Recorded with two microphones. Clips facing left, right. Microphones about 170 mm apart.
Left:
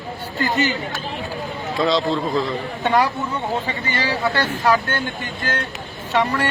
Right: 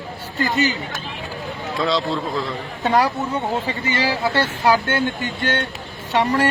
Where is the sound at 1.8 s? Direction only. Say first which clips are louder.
Left 2 dB; centre (ahead or behind).